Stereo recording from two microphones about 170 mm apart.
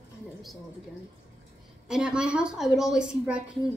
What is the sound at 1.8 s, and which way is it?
A woman's voice, 5° right (ahead or behind).